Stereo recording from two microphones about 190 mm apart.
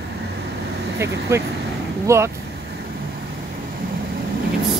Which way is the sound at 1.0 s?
15° right (ahead or behind).